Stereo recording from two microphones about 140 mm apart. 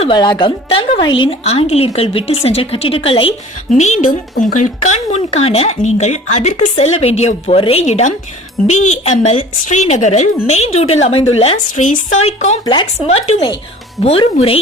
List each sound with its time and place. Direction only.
0.1 s a woman's voice: 35° left (ahead or behind)
3.8 s speech: 55° left (ahead or behind)
12.6 s a woman's voice: 35° left (ahead or behind)
13.1 s speech: 50° left (ahead or behind)